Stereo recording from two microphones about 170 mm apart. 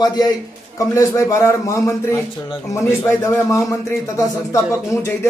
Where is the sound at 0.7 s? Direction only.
20° left (ahead or behind).